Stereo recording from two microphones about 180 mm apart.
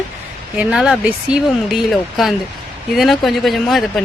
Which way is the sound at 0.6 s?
5° right (ahead or behind).